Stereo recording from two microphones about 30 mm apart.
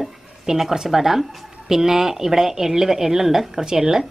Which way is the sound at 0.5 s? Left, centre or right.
Centre.